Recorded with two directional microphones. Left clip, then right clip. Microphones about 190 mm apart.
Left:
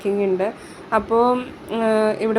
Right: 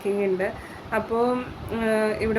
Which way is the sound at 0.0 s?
25° left (ahead or behind).